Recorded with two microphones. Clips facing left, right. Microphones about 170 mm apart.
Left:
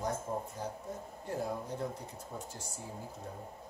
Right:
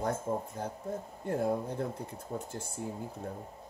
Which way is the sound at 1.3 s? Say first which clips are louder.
Right 5 dB; 55° right (ahead or behind).